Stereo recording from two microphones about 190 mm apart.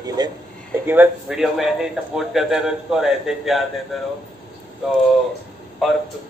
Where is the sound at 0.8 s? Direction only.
5° right (ahead or behind).